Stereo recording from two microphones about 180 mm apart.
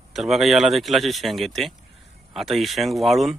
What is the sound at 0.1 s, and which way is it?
Speech, centre (ahead or behind).